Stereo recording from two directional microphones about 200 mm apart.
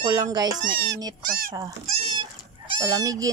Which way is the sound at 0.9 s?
50° right (ahead or behind).